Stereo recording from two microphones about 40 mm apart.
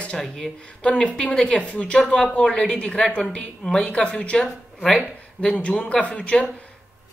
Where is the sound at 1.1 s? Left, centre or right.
Left.